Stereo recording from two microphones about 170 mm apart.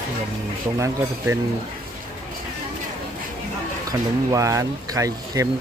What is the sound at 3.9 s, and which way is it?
Speech, 20° right (ahead or behind).